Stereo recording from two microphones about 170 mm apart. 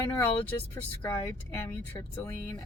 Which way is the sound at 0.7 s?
10° left (ahead or behind).